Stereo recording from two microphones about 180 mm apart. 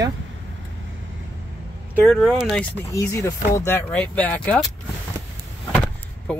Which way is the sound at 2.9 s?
15° left (ahead or behind).